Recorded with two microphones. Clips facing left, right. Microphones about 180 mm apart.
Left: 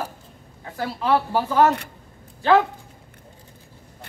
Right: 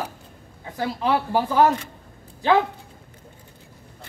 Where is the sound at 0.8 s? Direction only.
15° right (ahead or behind).